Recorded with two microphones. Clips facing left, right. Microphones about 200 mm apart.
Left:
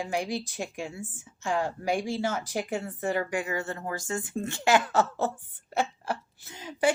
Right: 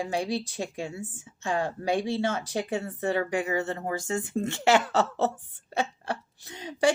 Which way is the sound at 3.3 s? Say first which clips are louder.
Right 3 dB; 30° right (ahead or behind).